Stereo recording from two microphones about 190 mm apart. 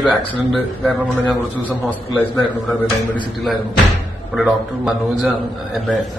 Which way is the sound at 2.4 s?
10° left (ahead or behind).